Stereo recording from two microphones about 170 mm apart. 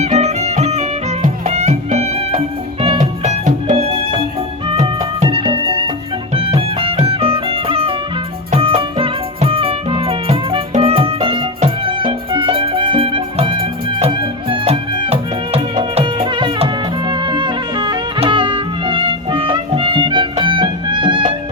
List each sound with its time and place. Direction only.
0.0 s music: 40° right (ahead or behind)